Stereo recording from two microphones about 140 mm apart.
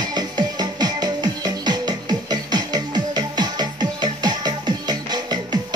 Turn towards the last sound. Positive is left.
turn(degrees=-30)  # may be behind; listen again after turning